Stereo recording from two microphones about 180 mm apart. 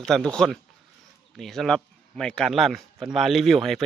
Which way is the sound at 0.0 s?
5° left (ahead or behind).